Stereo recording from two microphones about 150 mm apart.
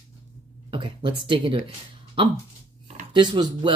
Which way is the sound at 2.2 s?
35° right (ahead or behind).